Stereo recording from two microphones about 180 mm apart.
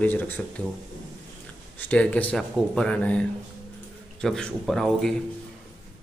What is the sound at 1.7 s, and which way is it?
Speech, 10° left (ahead or behind).